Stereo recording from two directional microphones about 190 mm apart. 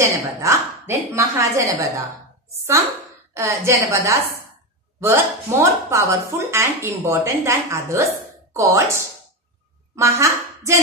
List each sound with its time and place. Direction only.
0.0 s speech: 15° right (ahead or behind)
3.3 s speech: 15° right (ahead or behind)